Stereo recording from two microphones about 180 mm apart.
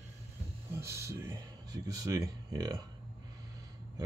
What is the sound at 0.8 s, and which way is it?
Speech, 15° right (ahead or behind).